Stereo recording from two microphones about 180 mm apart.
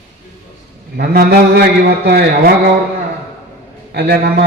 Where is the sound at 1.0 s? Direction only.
60° right (ahead or behind).